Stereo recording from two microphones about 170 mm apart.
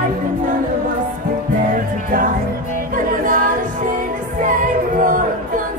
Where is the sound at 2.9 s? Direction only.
50° right (ahead or behind).